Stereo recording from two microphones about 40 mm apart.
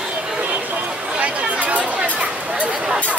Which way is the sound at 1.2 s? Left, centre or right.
Right.